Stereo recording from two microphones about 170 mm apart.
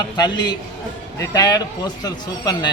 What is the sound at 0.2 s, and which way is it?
A man's voice, 25° left (ahead or behind).